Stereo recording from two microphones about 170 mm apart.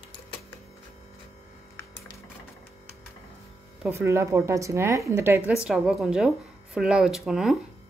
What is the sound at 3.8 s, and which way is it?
A woman's voice, 15° right (ahead or behind).